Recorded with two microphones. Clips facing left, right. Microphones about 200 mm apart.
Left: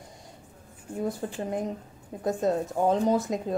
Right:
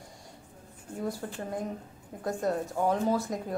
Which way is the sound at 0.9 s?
20° left (ahead or behind).